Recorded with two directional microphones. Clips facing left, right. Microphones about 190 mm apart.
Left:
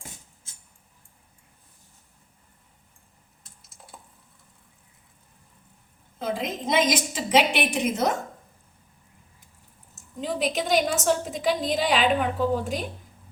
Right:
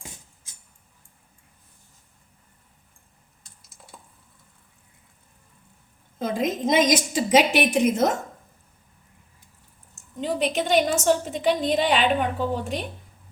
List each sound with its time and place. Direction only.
3.4 s a sound: centre (ahead or behind)
6.1 s a woman's voice: 45° right (ahead or behind)
10.2 s a woman's voice: centre (ahead or behind)